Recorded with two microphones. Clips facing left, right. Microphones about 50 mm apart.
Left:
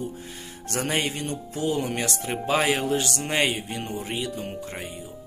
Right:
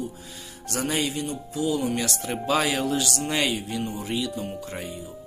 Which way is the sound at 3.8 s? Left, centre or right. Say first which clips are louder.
Right 2 dB; left.